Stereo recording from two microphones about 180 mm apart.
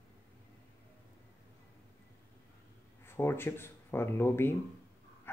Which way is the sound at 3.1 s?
15° left (ahead or behind).